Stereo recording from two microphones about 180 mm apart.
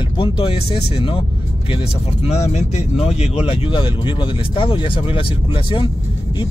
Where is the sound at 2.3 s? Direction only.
35° left (ahead or behind).